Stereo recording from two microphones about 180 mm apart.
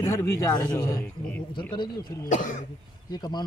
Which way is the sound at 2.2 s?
45° left (ahead or behind).